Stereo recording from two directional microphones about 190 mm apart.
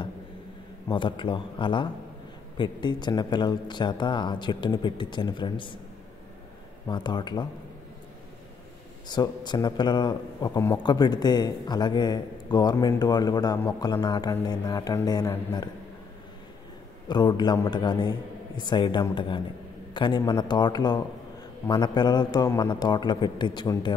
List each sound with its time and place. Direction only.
0.8 s a man's voice: 25° left (ahead or behind)
6.9 s a man's voice: 20° left (ahead or behind)
9.1 s a man's voice: 20° left (ahead or behind)
17.1 s a man's voice: 25° left (ahead or behind)